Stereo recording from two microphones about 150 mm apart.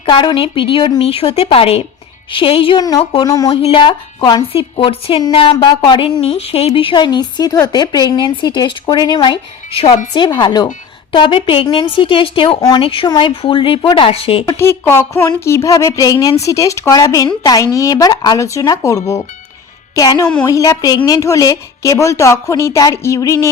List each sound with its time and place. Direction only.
0.0 s speech: 35° left (ahead or behind)
3.2 s a woman's voice: 20° left (ahead or behind)
3.5 s speech: 35° left (ahead or behind)
4.5 s a woman's voice: 40° left (ahead or behind)
14.6 s a woman's voice: 15° left (ahead or behind)